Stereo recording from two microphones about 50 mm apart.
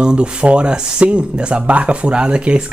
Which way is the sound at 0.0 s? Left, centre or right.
Centre.